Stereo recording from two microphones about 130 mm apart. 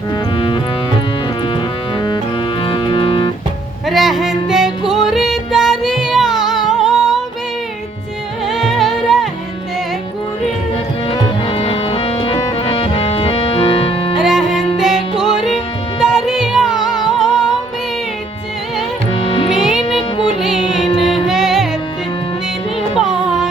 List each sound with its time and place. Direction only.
0.3 s music: 40° left (ahead or behind)
2.6 s music: 40° left (ahead or behind)
3.8 s music: centre (ahead or behind)
8.4 s music: centre (ahead or behind)
11.1 s music: 45° left (ahead or behind)
14.2 s music: 5° right (ahead or behind)
19.1 s music: 45° left (ahead or behind)
19.5 s music: 5° right (ahead or behind)
23.0 s music: 5° right (ahead or behind)